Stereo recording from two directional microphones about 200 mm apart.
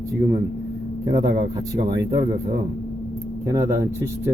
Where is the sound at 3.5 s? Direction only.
15° right (ahead or behind).